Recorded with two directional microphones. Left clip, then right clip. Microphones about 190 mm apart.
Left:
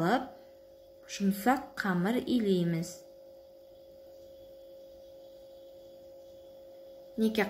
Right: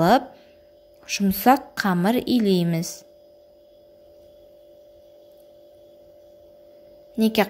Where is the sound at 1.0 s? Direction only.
40° right (ahead or behind).